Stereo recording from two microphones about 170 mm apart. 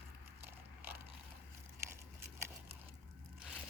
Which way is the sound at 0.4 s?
15° right (ahead or behind).